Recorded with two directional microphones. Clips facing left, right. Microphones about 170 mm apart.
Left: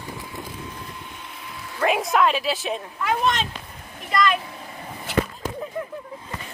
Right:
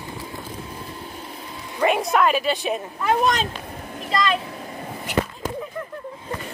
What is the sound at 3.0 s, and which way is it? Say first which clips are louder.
Speech: right 3 dB; 40° right (ahead or behind).